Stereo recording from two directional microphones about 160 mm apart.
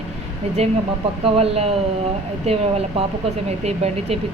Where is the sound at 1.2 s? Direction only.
40° right (ahead or behind).